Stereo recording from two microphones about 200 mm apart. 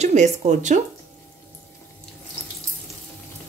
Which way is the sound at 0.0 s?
35° right (ahead or behind).